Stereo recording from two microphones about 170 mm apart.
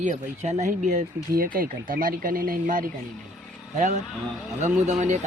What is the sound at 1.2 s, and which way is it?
Speech, 60° right (ahead or behind).